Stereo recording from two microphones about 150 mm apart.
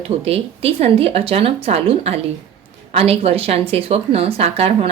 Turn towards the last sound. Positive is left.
turn(degrees=-45)  # may be behind; listen again after turning